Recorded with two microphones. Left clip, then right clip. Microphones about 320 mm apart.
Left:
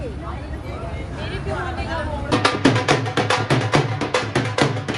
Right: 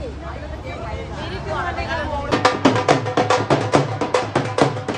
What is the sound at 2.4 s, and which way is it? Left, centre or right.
Music, centre.